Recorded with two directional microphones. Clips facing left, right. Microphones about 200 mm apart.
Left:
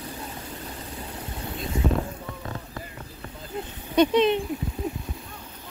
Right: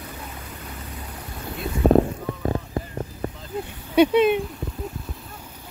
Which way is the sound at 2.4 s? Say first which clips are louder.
Right 10 dB; 40° right (ahead or behind).